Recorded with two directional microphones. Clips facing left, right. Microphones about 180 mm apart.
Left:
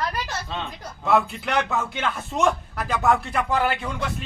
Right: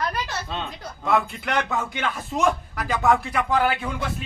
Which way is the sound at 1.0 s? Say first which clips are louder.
Left 2 dB; 5° left (ahead or behind).